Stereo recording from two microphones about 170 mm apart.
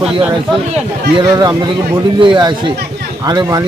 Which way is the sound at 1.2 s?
25° right (ahead or behind).